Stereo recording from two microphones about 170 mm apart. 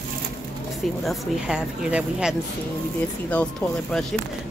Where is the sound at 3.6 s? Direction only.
5° left (ahead or behind).